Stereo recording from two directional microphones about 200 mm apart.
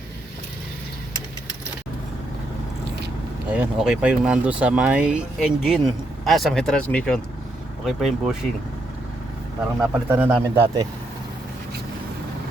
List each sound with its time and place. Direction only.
3.5 s speech: 5° right (ahead or behind)
9.9 s speech: 10° right (ahead or behind)